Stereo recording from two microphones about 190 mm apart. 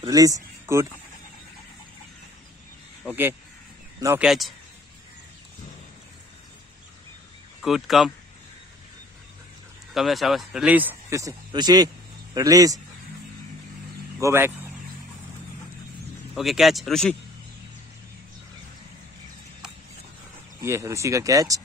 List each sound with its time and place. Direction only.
0.0 s speech: 20° right (ahead or behind)
4.2 s speech: centre (ahead or behind)
7.6 s speech: centre (ahead or behind)
9.9 s speech: centre (ahead or behind); by 12.8 s 20° right (ahead or behind)
14.2 s speech: 10° right (ahead or behind)
16.3 s speech: centre (ahead or behind)
20.6 s speech: 15° right (ahead or behind)